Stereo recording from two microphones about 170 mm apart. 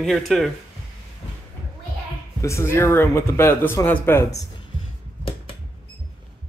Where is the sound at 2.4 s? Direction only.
15° left (ahead or behind).